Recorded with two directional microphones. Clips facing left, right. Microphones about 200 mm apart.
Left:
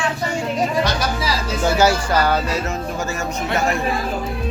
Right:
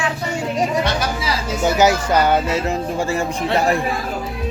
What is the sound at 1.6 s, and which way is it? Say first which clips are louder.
Speech: right 1 dB; 20° right (ahead or behind).